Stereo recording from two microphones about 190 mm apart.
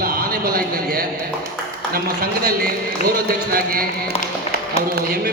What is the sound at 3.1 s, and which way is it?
Speech, 50° right (ahead or behind).